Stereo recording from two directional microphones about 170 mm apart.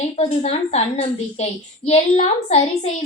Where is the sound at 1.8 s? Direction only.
40° left (ahead or behind).